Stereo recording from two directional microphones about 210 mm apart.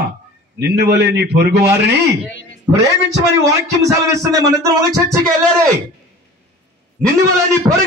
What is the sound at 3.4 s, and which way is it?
A man's voice, 15° right (ahead or behind).